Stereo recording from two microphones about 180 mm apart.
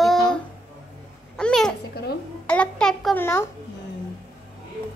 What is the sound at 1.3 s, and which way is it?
A child's voice, 5° left (ahead or behind).